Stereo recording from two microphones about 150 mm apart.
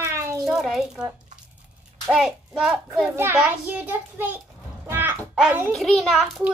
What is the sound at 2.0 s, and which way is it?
A child's voice, centre (ahead or behind).